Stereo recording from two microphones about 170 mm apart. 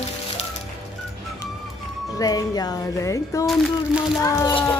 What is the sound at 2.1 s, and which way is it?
Speech, 20° left (ahead or behind).